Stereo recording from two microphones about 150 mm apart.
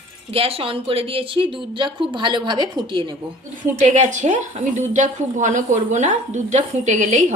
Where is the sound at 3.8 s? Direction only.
55° right (ahead or behind).